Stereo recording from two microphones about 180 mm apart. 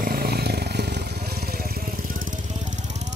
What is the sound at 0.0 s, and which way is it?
Vehicle, 60° right (ahead or behind).